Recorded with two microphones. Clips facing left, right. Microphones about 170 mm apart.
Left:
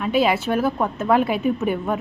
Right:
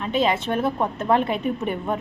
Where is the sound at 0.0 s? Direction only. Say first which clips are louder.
Left 3 dB; 10° left (ahead or behind).